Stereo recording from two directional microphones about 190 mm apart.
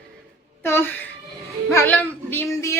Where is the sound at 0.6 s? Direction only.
15° left (ahead or behind).